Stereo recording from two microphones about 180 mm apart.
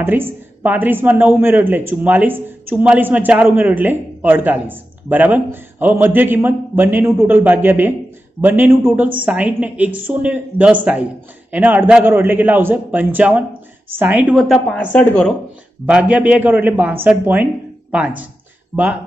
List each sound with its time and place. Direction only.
0.0 s a woman's voice: 10° right (ahead or behind); by 15.3 s 5° left (ahead or behind)
15.8 s a woman's voice: 10° right (ahead or behind)